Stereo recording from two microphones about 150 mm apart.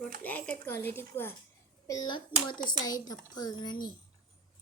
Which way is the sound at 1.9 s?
30° left (ahead or behind).